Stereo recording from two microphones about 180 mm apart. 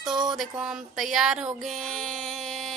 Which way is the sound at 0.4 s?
5° right (ahead or behind).